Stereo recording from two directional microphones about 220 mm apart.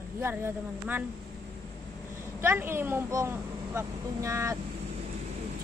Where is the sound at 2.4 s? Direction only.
10° right (ahead or behind).